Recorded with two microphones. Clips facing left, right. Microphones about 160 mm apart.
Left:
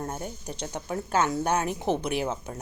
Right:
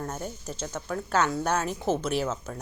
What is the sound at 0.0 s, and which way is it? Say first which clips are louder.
Speech: even; 15° left (ahead or behind).